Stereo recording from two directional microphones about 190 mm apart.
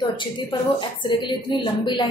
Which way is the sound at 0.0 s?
25° left (ahead or behind).